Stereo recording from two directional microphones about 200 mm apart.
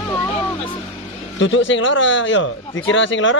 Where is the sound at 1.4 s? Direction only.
70° left (ahead or behind).